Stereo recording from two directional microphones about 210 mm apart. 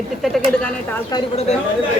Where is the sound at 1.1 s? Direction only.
30° left (ahead or behind).